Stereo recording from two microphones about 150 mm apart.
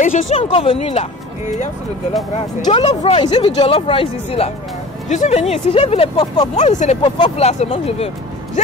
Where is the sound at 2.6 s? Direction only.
30° left (ahead or behind).